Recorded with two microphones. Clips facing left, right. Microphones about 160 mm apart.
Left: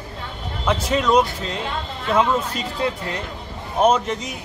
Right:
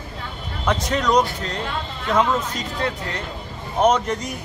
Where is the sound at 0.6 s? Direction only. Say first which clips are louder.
Left 1 dB; 5° left (ahead or behind).